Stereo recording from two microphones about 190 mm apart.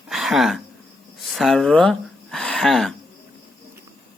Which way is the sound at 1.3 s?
Centre (ahead or behind).